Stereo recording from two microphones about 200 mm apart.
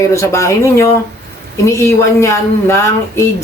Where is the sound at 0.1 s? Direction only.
15° left (ahead or behind).